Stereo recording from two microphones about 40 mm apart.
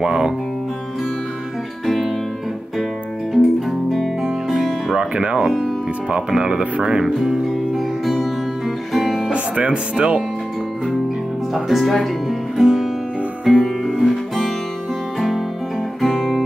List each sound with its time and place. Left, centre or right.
0.0 s speech: centre
3.3 s music: centre
5.1 s speech: right
7.1 s music: centre
9.3 s speech: right
11.5 s speech: centre
12.3 s music: centre